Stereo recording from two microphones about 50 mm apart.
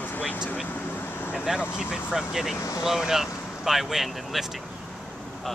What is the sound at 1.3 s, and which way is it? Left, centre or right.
Vehicle, centre.